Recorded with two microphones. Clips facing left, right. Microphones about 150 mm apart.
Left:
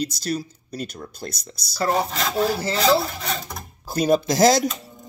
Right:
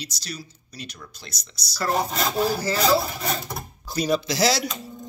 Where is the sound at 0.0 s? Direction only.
50° left (ahead or behind).